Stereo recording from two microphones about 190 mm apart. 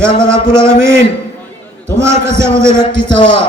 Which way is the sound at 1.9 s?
15° right (ahead or behind).